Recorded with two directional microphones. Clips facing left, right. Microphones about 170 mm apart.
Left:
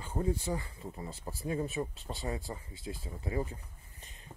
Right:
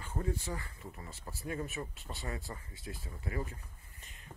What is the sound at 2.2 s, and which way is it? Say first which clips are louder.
Speech: left 4 dB; 20° left (ahead or behind).